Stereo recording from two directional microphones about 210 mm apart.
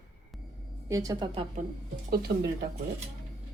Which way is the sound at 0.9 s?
15° right (ahead or behind).